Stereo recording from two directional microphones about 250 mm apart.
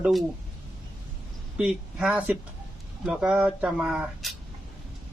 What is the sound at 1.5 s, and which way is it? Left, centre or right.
Speech, centre.